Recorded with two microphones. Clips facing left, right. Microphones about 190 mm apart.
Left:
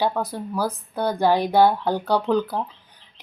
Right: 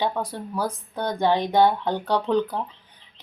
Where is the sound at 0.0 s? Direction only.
5° left (ahead or behind).